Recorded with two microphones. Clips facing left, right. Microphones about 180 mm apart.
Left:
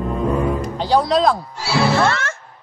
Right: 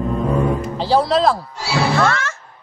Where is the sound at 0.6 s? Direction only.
5° right (ahead or behind).